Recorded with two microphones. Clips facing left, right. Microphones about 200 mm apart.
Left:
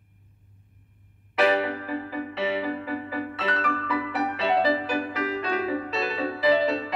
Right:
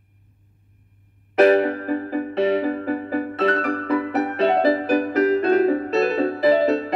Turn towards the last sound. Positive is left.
turn(degrees=-45)  # may be behind; listen again after turning